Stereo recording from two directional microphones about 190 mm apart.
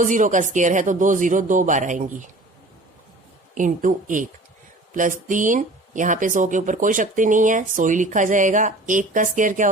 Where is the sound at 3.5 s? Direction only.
45° right (ahead or behind).